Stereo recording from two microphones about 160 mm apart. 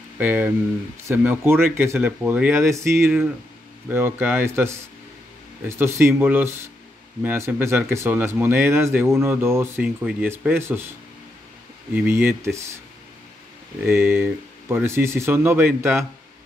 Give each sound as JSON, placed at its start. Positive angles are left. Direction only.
{"t": 0.2, "sound": "speech", "side_deg": -10}
{"t": 11.9, "sound": "speech", "side_deg": -10}
{"t": 13.8, "sound": "speech", "side_deg": -15}